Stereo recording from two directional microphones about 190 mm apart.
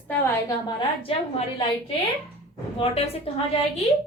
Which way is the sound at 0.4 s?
25° left (ahead or behind).